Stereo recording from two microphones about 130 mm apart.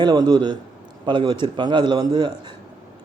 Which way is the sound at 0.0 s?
35° right (ahead or behind).